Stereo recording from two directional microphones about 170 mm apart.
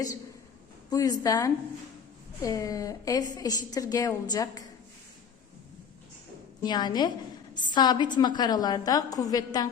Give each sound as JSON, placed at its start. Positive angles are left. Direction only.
{"t": 0.9, "sound": "a woman's voice", "side_deg": 20}
{"t": 6.6, "sound": "a woman's voice", "side_deg": 25}